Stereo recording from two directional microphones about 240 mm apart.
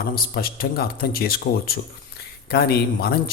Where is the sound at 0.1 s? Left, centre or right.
Left.